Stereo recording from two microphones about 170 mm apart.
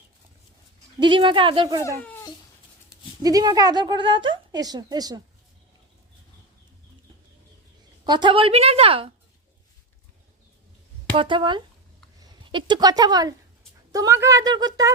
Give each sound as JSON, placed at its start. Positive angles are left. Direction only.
{"t": 0.9, "sound": "a woman's voice", "side_deg": -30}
{"t": 3.2, "sound": "a woman's voice", "side_deg": -25}
{"t": 8.0, "sound": "a woman's voice", "side_deg": -25}
{"t": 11.1, "sound": "a woman's voice", "side_deg": -30}